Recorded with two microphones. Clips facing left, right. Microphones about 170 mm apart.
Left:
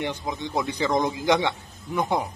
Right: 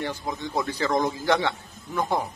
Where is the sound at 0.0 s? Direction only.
20° left (ahead or behind).